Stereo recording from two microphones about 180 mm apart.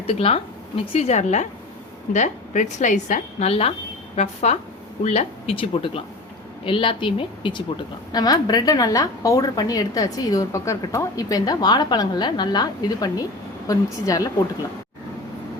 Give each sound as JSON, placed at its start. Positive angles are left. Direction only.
{"t": 0.1, "sound": "a woman's voice", "side_deg": 35}